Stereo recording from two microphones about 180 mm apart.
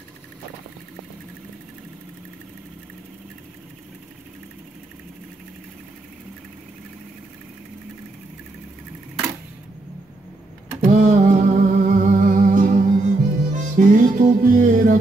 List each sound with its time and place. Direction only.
10.8 s music: 40° right (ahead or behind)